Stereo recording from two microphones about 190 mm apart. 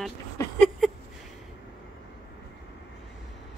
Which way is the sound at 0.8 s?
Centre (ahead or behind).